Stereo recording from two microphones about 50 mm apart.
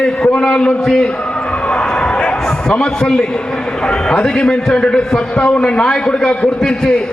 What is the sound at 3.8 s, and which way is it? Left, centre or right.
A man's voice, centre.